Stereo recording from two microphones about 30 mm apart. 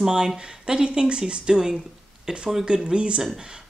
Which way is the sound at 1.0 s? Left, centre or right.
Right.